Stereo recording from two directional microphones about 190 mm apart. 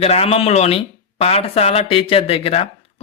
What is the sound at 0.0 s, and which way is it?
Speech, 35° left (ahead or behind).